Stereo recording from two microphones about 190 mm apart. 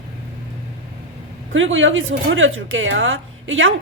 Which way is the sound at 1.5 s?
90° right.